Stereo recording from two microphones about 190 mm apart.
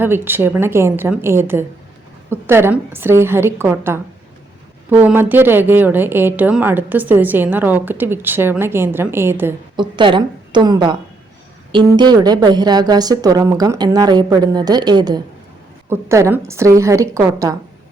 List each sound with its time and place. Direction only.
0.0 s a woman's voice: 10° right (ahead or behind)
9.7 s a woman's voice: 25° right (ahead or behind)